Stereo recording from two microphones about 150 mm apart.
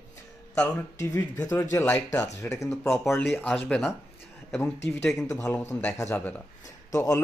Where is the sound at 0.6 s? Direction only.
15° left (ahead or behind).